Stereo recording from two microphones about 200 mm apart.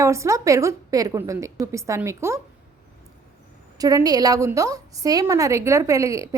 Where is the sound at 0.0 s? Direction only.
15° right (ahead or behind).